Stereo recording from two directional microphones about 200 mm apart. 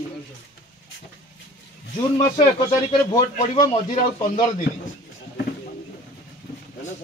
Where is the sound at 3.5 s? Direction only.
25° left (ahead or behind).